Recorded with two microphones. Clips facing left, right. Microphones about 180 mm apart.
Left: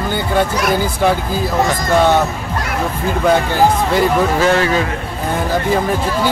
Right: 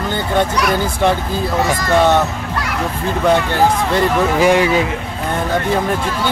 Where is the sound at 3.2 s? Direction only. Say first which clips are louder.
Left 1 dB; 5° left (ahead or behind).